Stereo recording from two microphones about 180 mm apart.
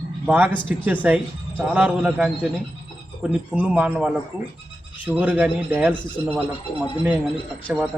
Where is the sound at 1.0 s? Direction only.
10° right (ahead or behind).